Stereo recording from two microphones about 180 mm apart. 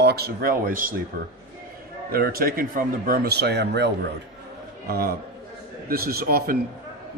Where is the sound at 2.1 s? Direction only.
55° right (ahead or behind).